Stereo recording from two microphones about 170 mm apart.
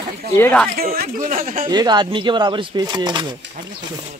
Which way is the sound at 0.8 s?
60° right (ahead or behind).